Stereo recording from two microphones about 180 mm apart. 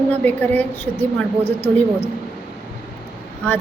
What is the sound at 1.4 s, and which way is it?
Speech, 30° left (ahead or behind).